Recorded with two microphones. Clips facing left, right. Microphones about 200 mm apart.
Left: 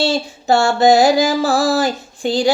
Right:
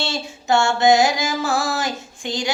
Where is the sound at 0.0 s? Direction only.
35° left (ahead or behind).